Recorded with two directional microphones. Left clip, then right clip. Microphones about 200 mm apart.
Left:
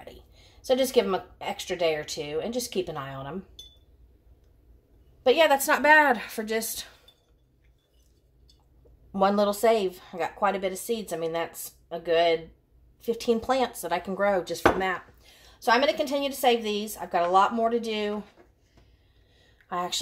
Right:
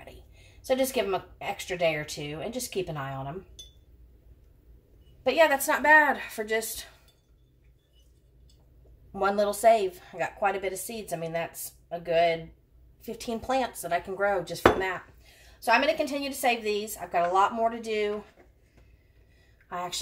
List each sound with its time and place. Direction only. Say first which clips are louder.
0.7 s a woman's voice: left 3 dB; 40° left (ahead or behind)
5.2 s a woman's voice: left 2 dB; 45° left (ahead or behind)
9.1 s a woman's voice: left 3 dB; 35° left (ahead or behind)